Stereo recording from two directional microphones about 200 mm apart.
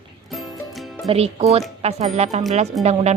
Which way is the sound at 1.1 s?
30° right (ahead or behind).